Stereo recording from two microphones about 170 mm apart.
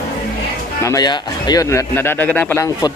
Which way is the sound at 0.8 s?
25° left (ahead or behind).